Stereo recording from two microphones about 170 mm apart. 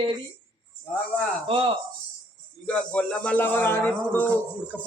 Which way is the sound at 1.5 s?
30° right (ahead or behind).